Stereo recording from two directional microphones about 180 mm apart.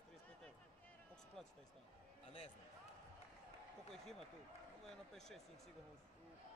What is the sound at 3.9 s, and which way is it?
Speech, centre (ahead or behind).